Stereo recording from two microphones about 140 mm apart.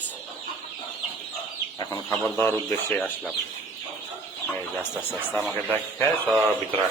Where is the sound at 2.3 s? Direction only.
15° left (ahead or behind).